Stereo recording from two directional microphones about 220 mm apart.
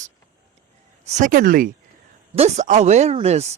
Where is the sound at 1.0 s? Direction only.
40° right (ahead or behind).